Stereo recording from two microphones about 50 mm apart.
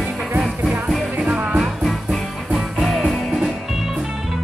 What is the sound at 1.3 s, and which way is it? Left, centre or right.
Music, right.